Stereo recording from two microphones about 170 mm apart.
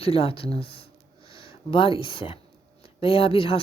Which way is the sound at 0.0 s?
35° left (ahead or behind).